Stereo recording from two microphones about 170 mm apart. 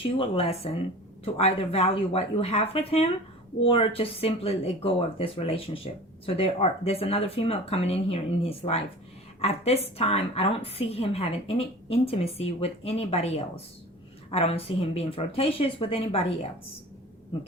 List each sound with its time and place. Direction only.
0.0 s speech: 35° left (ahead or behind)